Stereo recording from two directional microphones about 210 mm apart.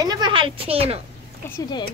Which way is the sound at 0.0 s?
20° right (ahead or behind).